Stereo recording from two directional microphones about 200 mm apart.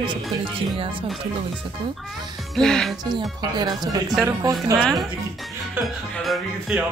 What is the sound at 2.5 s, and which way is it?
Speech, centre (ahead or behind).